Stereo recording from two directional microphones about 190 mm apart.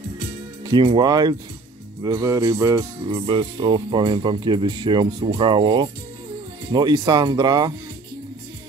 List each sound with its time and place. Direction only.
0.7 s speech: 25° right (ahead or behind)
2.0 s music: 15° right (ahead or behind)
3.1 s speech: 25° right (ahead or behind)